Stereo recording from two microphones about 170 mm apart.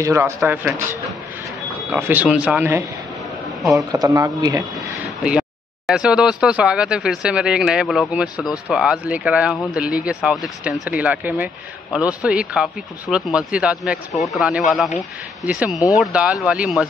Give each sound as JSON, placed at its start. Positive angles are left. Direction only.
{"t": 0.0, "sound": "speech", "side_deg": -15}
{"t": 1.9, "sound": "speech", "side_deg": -10}
{"t": 3.9, "sound": "speech", "side_deg": -20}
{"t": 4.7, "sound": "speech", "side_deg": -5}